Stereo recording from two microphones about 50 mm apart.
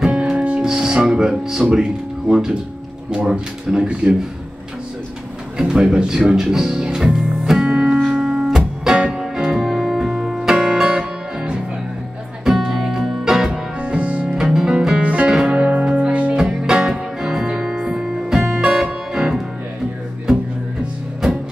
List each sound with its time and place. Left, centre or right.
0.1 s music: right
0.7 s music: centre
0.9 s speech: centre
5.6 s speech: centre
7.6 s music: right
8.5 s music: centre
13.7 s music: right
14.3 s music: centre
16.3 s music: centre